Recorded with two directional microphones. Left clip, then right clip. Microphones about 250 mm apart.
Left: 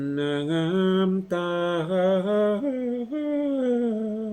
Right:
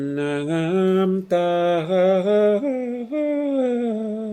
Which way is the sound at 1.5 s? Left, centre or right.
Right.